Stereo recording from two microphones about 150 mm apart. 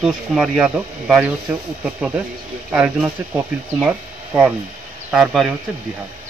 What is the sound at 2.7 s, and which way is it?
Speech, 10° right (ahead or behind).